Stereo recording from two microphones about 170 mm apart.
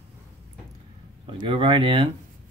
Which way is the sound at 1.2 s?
30° right (ahead or behind).